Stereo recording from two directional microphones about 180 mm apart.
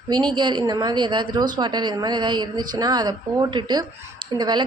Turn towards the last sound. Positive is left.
turn(degrees=-25)  # may be behind; listen again after turning